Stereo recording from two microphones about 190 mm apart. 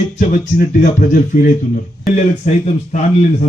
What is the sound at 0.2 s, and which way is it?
A man's voice, 45° left (ahead or behind).